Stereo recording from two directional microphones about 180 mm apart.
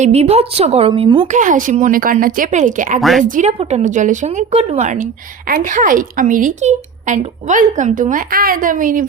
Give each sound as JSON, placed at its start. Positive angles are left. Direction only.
{"t": 0.0, "sound": "speech", "side_deg": -35}
{"t": 1.3, "sound": "a woman's voice", "side_deg": -45}
{"t": 3.0, "sound": "speech", "side_deg": 0}
{"t": 3.2, "sound": "a woman's voice", "side_deg": -45}